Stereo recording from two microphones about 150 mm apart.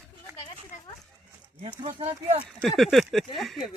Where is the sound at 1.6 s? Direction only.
45° right (ahead or behind).